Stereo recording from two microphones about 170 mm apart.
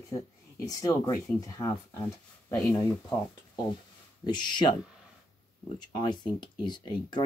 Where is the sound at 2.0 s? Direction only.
5° left (ahead or behind).